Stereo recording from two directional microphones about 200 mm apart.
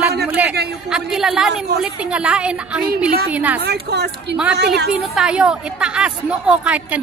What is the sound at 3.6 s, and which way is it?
Speech, 55° right (ahead or behind).